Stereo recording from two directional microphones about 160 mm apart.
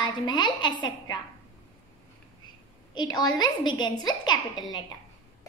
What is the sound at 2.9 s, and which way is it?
A woman's voice, 25° left (ahead or behind).